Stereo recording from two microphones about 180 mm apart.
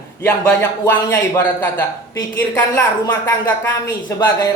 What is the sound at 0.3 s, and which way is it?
Speech, 10° left (ahead or behind).